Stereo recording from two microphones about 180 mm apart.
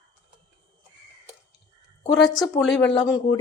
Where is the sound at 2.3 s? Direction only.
20° left (ahead or behind).